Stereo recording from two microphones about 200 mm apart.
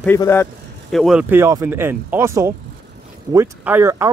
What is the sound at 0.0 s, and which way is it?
Speech, 10° left (ahead or behind).